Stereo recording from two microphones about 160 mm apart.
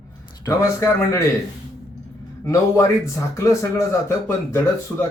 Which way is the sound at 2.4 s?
20° left (ahead or behind).